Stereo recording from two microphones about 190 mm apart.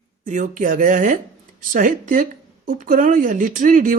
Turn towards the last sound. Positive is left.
turn(degrees=-45)  # may be behind; listen again after turning